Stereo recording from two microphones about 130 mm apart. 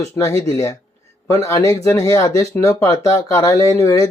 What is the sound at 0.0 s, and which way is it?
Speech, 25° left (ahead or behind).